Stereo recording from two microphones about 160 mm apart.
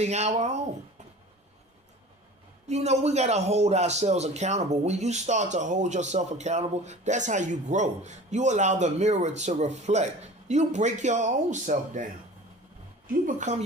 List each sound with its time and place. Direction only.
0.0 s a man's voice: 45° right (ahead or behind)
2.6 s a man's voice: 45° right (ahead or behind)
13.2 s a man's voice: 45° right (ahead or behind)